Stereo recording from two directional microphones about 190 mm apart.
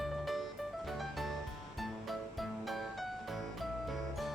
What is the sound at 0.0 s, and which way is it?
Music, centre (ahead or behind).